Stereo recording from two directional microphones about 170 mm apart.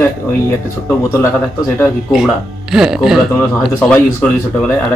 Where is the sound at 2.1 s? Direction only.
5° right (ahead or behind).